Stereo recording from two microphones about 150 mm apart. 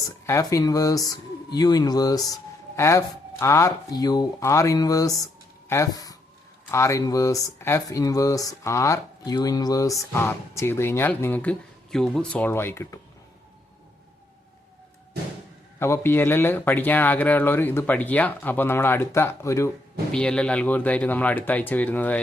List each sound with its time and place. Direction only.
0.3 s speech: 20° left (ahead or behind)
15.8 s speech: 15° left (ahead or behind)
20.1 s speech: 5° left (ahead or behind)